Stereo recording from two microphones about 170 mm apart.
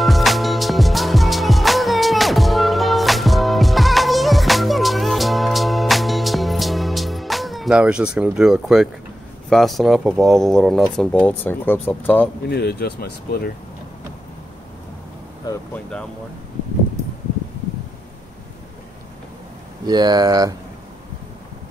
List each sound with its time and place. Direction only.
0.0 s music: centre (ahead or behind)
9.5 s speech: centre (ahead or behind)
12.4 s speech: 70° left (ahead or behind)
15.7 s speech: 5° left (ahead or behind)
19.9 s speech: 25° right (ahead or behind)